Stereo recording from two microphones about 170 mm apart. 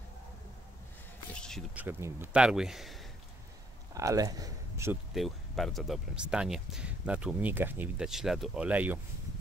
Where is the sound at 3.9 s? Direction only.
20° right (ahead or behind).